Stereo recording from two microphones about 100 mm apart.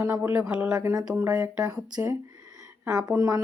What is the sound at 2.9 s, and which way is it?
Speech, 30° right (ahead or behind).